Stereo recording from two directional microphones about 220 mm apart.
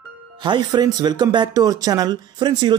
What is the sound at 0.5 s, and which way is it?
Speech, 20° right (ahead or behind).